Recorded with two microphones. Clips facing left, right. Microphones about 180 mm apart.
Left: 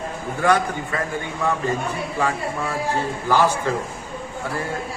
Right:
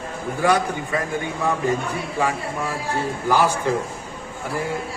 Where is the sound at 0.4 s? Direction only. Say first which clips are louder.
Even; 10° right (ahead or behind).